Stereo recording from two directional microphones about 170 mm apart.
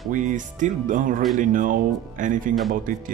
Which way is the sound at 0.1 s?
50° right (ahead or behind).